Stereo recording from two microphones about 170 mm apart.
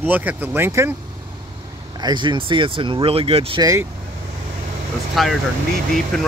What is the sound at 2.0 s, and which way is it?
Speech, 25° right (ahead or behind).